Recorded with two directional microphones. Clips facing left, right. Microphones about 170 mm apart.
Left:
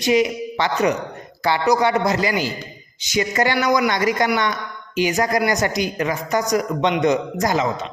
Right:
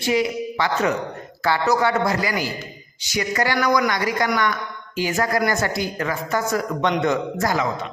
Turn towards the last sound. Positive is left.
turn(degrees=20)  # may be behind; listen again after turning